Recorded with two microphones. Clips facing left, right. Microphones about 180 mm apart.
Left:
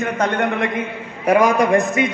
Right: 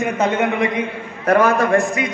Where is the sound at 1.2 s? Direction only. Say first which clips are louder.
Even; 10° left (ahead or behind).